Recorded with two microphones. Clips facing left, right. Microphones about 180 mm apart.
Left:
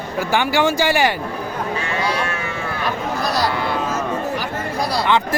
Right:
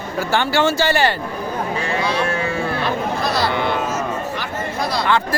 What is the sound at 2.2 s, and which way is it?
Livestock, 30° right (ahead or behind).